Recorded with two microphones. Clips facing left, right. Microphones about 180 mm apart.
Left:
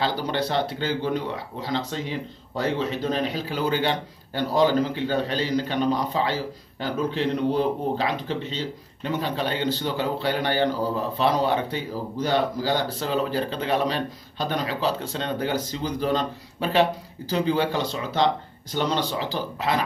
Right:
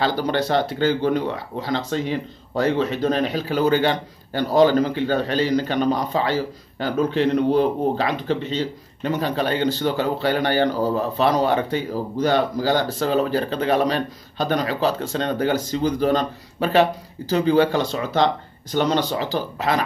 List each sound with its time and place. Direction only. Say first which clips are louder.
0.0 s speech: right 4 dB; 45° right (ahead or behind)
9.0 s speech: right 4 dB; 45° right (ahead or behind)
18.9 s speech: right 4 dB; 45° right (ahead or behind)